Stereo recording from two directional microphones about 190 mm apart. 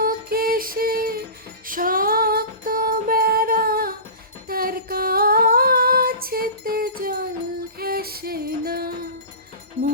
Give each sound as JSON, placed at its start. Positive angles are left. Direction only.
{"t": 0.0, "sound": "music", "side_deg": -50}
{"t": 1.6, "sound": "female singing", "side_deg": -45}
{"t": 4.4, "sound": "a sound", "side_deg": -50}
{"t": 7.8, "sound": "music", "side_deg": -55}